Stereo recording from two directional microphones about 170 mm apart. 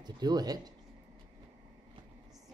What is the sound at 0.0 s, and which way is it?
Speech, 25° right (ahead or behind).